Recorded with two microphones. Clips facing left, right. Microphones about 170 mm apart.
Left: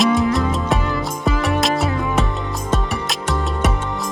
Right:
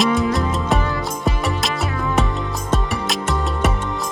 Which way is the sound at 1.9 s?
20° left (ahead or behind).